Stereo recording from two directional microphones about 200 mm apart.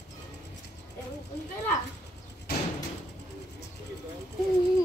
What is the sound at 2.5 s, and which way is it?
Door, 50° left (ahead or behind).